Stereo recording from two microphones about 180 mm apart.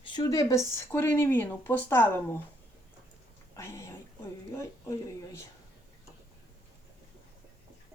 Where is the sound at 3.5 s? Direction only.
15° left (ahead or behind).